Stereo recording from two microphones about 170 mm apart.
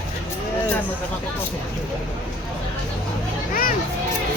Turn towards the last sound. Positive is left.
turn(degrees=55)  # may be behind; listen again after turning